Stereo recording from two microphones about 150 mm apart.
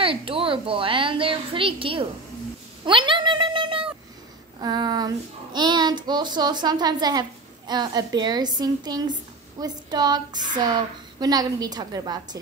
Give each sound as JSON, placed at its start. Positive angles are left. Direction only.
{"t": 0.0, "sound": "a woman's voice", "side_deg": -35}
{"t": 4.6, "sound": "child singing", "side_deg": -25}